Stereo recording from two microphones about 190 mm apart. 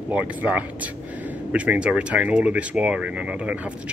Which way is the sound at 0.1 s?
10° right (ahead or behind).